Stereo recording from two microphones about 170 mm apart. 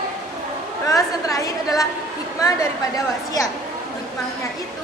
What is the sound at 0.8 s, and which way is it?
A woman's voice, 20° left (ahead or behind).